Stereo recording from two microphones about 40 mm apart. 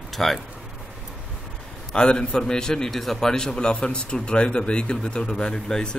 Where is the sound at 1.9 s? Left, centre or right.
Left.